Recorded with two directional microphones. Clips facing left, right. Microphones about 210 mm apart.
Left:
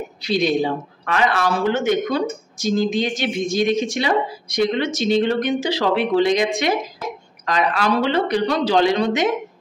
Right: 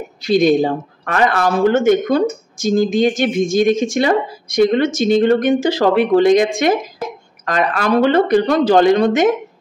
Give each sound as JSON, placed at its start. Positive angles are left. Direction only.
{"t": 0.2, "sound": "speech", "side_deg": -50}